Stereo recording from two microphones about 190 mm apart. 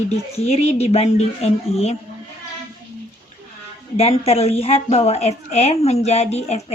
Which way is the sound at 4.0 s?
30° left (ahead or behind).